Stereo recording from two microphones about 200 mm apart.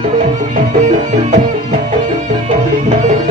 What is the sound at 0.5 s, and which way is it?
Music, 35° right (ahead or behind).